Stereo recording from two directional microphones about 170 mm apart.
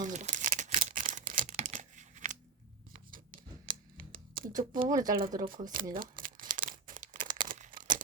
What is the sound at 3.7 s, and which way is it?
Music, 55° right (ahead or behind).